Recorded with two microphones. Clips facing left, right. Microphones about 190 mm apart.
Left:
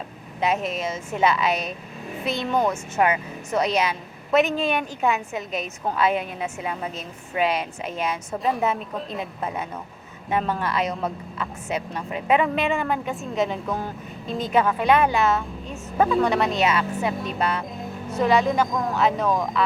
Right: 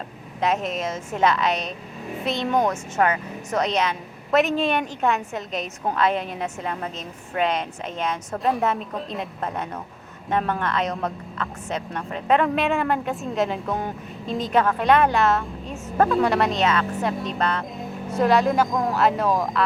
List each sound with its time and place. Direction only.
0.4 s a woman's voice: 5° left (ahead or behind)